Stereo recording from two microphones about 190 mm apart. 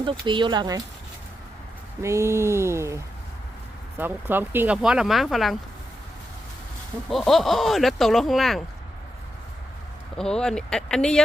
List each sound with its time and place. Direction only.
0.0 s speech: 25° right (ahead or behind)
2.0 s a sound: 15° right (ahead or behind)
3.9 s speech: 10° right (ahead or behind)
7.1 s speech: centre (ahead or behind)
10.2 s speech: 5° left (ahead or behind)